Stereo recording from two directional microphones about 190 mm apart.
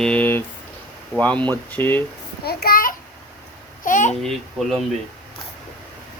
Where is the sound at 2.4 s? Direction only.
55° left (ahead or behind).